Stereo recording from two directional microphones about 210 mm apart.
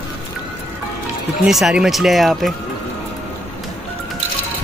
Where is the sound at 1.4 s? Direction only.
Centre (ahead or behind).